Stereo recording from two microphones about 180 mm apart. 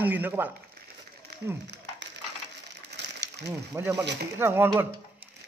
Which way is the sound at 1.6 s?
70° right (ahead or behind).